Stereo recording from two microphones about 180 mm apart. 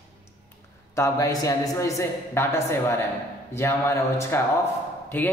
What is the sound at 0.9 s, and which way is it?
A man's voice, 15° left (ahead or behind).